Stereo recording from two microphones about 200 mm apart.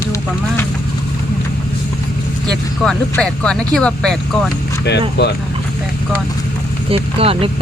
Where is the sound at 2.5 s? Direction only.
5° left (ahead or behind).